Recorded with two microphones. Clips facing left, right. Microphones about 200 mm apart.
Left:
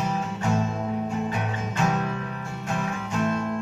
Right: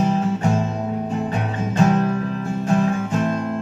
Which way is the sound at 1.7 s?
40° right (ahead or behind).